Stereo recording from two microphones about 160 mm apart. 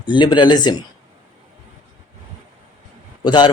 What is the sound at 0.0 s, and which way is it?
Speech, 30° left (ahead or behind).